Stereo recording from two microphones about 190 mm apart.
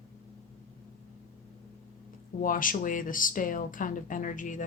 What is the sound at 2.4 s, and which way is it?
Speech, 45° left (ahead or behind).